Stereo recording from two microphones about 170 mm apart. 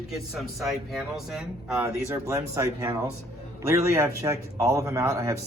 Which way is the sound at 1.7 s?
15° right (ahead or behind).